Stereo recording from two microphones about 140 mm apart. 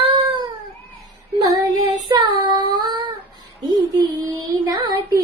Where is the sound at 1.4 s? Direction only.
30° right (ahead or behind).